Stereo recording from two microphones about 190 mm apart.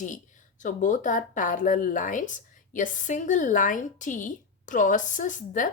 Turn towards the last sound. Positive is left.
turn(degrees=40)  # may be behind; listen again after turning